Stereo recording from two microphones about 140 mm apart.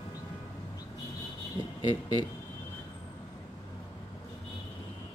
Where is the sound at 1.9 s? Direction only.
30° left (ahead or behind).